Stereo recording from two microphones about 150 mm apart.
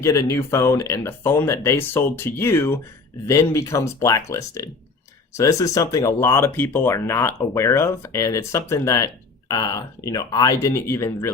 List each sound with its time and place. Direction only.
0.0 s speech: 20° left (ahead or behind)